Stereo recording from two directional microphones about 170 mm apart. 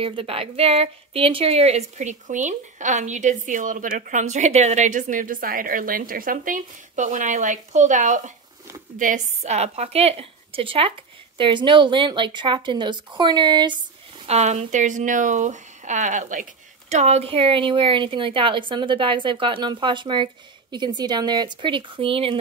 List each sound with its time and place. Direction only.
0.0 s a woman's voice: 35° right (ahead or behind)
14.2 s a woman's voice: 40° right (ahead or behind)